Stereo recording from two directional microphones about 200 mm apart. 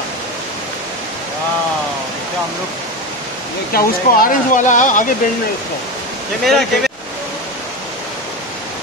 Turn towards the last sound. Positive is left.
turn(degrees=0)  # may be behind; listen again after turning